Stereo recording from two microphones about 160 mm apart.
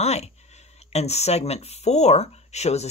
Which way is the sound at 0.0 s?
45° left (ahead or behind).